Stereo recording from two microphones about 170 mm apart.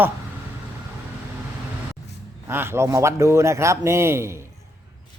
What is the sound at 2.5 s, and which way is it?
A man's voice, 15° right (ahead or behind).